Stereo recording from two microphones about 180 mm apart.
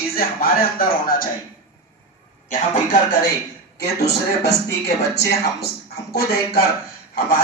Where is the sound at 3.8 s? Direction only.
65° left (ahead or behind).